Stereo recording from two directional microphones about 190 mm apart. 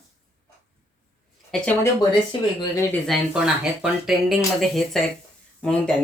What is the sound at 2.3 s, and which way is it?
Speech, 25° left (ahead or behind).